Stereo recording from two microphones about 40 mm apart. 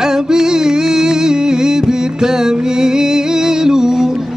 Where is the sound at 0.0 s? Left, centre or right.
Centre.